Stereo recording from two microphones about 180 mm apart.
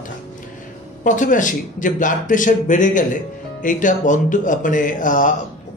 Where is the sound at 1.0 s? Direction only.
45° left (ahead or behind).